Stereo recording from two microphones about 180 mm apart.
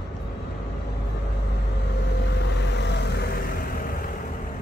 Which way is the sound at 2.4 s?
75° left (ahead or behind).